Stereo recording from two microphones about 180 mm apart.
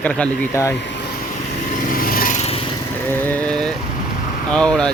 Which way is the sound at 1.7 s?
50° left (ahead or behind).